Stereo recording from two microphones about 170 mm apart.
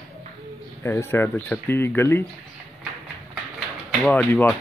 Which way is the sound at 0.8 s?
15° left (ahead or behind).